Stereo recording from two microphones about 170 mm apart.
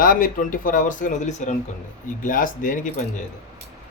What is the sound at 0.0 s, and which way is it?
Speech, 55° left (ahead or behind).